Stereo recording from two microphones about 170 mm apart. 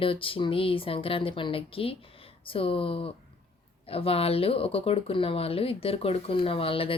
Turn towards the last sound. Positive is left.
turn(degrees=30)  # may be behind; listen again after turning